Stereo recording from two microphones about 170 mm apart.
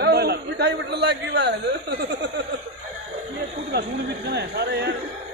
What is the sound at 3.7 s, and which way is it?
Speech, 75° right (ahead or behind).